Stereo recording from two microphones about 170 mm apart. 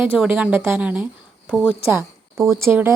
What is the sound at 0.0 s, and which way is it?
Speech, 10° right (ahead or behind).